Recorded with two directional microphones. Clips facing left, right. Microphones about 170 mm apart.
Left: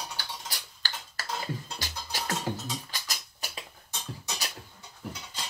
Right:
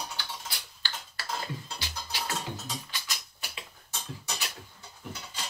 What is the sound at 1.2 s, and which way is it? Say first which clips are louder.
Dishes: left 1 dB; 45° left (ahead or behind).